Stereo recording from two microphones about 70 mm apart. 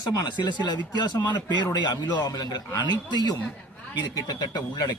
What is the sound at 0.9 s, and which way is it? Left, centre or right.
Speech, left.